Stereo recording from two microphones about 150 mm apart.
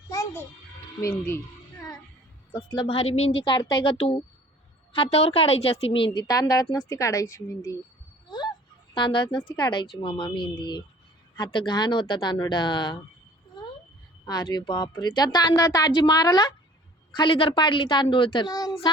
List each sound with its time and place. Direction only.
0.1 s music: 20° left (ahead or behind)
2.6 s a woman's voice: 35° left (ahead or behind)
8.3 s a sound: 30° left (ahead or behind)
9.0 s a woman's voice: 35° left (ahead or behind)
13.6 s cat: 30° left (ahead or behind)
14.3 s a woman's voice: 30° left (ahead or behind)